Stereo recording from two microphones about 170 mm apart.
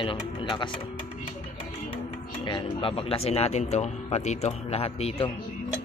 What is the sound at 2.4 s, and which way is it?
A man's voice, 30° left (ahead or behind).